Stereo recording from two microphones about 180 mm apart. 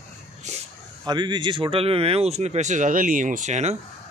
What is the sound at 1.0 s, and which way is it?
Speech, 25° right (ahead or behind).